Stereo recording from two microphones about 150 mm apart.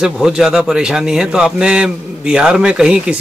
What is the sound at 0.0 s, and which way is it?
A man's voice, 5° right (ahead or behind).